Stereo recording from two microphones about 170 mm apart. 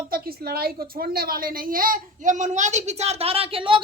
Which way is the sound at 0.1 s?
65° right (ahead or behind).